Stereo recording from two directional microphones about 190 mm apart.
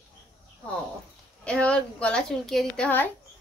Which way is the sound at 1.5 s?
5° left (ahead or behind).